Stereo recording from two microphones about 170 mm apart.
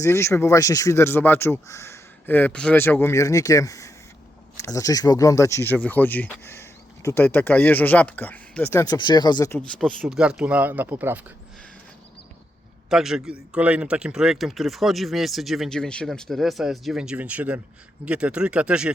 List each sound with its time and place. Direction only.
0.0 s speech: 15° left (ahead or behind)
8.8 s speech: 25° left (ahead or behind)
9.6 s speech: 5° left (ahead or behind)
12.9 s a man's voice: 5° right (ahead or behind)